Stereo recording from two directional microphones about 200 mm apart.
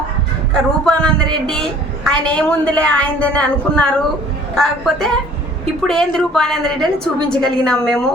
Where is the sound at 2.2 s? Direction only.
5° left (ahead or behind).